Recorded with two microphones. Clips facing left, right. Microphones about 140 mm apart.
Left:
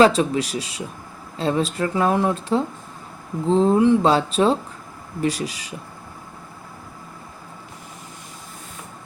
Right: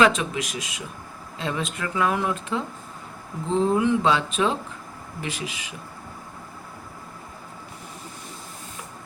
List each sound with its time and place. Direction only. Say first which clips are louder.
0.0 s speech: left 5 dB; 35° left (ahead or behind)